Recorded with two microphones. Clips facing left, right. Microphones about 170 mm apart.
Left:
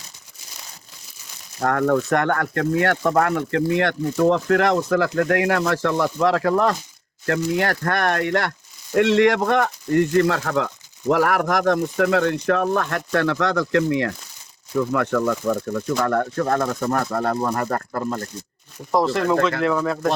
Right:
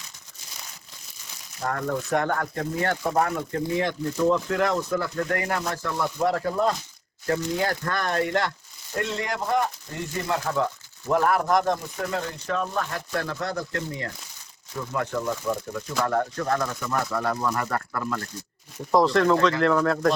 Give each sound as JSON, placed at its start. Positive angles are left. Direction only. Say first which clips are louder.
{"t": 1.6, "sound": "speech", "louder": "left 8 dB", "side_deg": 65}
{"t": 9.0, "sound": "speech", "louder": "left 12 dB", "side_deg": 80}
{"t": 18.9, "sound": "speech", "louder": "even", "side_deg": 0}